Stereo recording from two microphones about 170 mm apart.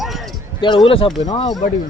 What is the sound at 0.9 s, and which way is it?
Speech, 30° left (ahead or behind).